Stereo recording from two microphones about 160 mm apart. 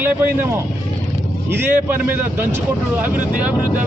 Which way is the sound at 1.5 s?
15° right (ahead or behind).